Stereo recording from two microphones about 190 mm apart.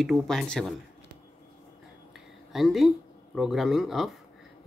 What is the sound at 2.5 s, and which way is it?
Speech, centre (ahead or behind).